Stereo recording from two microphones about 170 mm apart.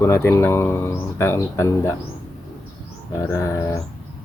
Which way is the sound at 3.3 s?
15° left (ahead or behind).